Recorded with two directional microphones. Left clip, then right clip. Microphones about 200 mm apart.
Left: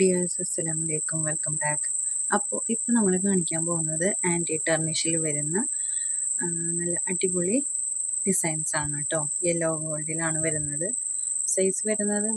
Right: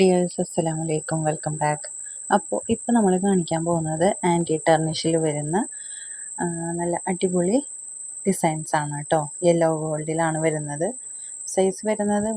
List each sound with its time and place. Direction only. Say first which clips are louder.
0.0 s speech: right 5 dB; 15° right (ahead or behind)